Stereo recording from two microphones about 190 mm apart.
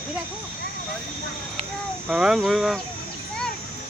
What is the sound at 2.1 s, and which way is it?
Speech, 5° right (ahead or behind).